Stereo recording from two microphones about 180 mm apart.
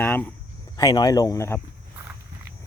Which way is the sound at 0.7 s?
20° left (ahead or behind).